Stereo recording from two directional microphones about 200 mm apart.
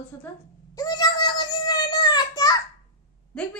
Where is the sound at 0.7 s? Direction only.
20° left (ahead or behind).